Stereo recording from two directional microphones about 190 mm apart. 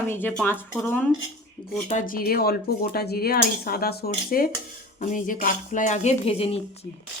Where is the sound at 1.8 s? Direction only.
45° left (ahead or behind).